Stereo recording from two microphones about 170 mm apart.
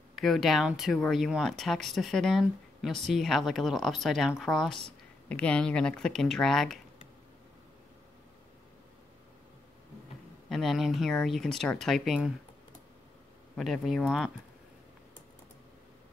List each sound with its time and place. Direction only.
0.1 s speech: centre (ahead or behind)
10.5 s speech: centre (ahead or behind)
13.6 s speech: centre (ahead or behind)